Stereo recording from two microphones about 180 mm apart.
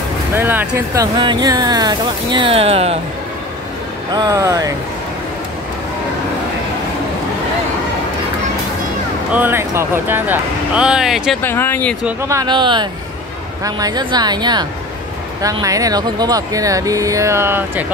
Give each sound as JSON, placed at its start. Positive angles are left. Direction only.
{"t": 0.3, "sound": "speech", "side_deg": -10}
{"t": 4.1, "sound": "speech", "side_deg": -20}
{"t": 9.3, "sound": "speech", "side_deg": -10}
{"t": 11.4, "sound": "speech", "side_deg": 10}
{"t": 12.2, "sound": "speech", "side_deg": -20}